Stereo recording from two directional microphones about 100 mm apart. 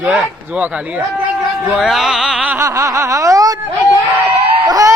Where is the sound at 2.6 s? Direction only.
30° right (ahead or behind).